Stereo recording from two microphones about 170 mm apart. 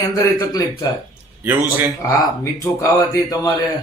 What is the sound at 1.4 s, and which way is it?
Speech, 10° right (ahead or behind).